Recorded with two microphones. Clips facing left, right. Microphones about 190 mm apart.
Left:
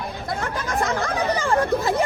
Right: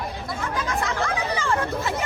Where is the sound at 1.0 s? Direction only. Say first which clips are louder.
Left 3 dB; 35° left (ahead or behind).